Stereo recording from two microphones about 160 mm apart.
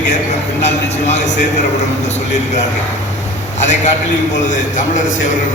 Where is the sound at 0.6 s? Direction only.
45° left (ahead or behind).